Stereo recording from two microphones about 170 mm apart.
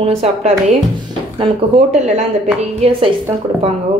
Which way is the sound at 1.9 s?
40° right (ahead or behind).